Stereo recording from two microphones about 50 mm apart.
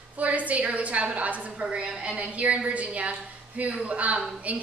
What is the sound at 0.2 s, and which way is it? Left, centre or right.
A woman's voice, right.